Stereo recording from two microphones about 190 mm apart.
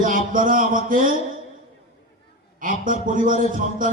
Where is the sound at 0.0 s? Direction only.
45° right (ahead or behind).